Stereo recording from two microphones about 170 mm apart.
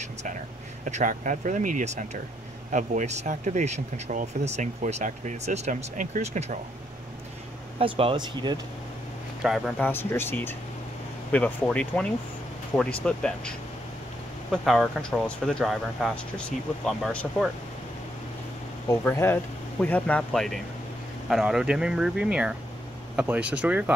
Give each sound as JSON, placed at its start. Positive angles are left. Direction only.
{"t": 0.0, "sound": "a sound", "side_deg": -45}
{"t": 0.8, "sound": "speech", "side_deg": -45}
{"t": 7.8, "sound": "speech", "side_deg": -30}
{"t": 9.4, "sound": "speech", "side_deg": 0}
{"t": 9.8, "sound": "speech", "side_deg": 10}
{"t": 18.9, "sound": "speech", "side_deg": 15}